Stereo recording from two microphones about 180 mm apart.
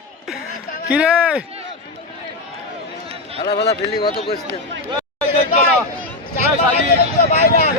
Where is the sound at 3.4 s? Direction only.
65° left (ahead or behind).